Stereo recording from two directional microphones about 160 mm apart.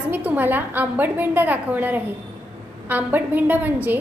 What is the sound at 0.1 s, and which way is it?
A woman's voice, 10° right (ahead or behind).